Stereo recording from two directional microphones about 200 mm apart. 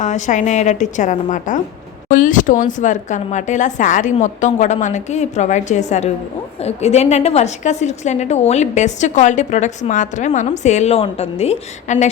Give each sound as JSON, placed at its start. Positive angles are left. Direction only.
{"t": 0.0, "sound": "a woman's voice", "side_deg": 35}